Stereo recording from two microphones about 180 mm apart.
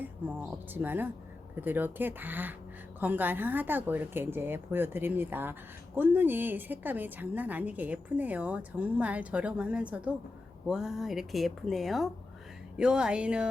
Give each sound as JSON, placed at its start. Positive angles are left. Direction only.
{"t": 0.0, "sound": "speech", "side_deg": -10}